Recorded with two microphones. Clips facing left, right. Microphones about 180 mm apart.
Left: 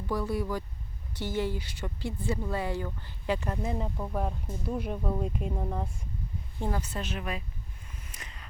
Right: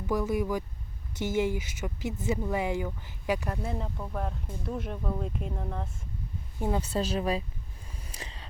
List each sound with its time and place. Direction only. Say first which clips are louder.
0.1 s speech: right 3 dB; 15° right (ahead or behind)
3.6 s speech: left 2 dB; centre (ahead or behind)
3.8 s speech: left 2 dB; 10° left (ahead or behind)
6.6 s speech: right 3 dB; 15° right (ahead or behind)
6.9 s speech: right 7 dB; 35° right (ahead or behind)
7.9 s a sound: right 8 dB; 35° right (ahead or behind)